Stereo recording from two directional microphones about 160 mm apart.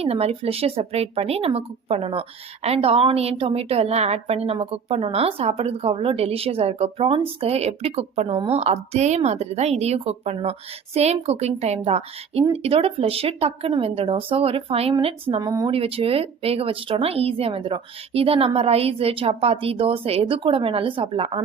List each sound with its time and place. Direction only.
0.0 s speech: 40° right (ahead or behind)